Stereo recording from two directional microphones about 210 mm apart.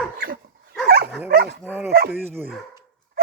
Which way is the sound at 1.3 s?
50° right (ahead or behind).